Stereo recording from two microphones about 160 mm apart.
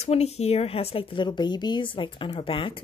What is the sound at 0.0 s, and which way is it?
A woman's voice, 40° left (ahead or behind).